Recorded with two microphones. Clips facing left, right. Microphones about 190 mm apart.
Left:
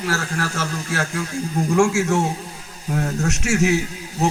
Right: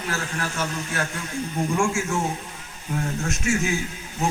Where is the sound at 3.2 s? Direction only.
75° left (ahead or behind).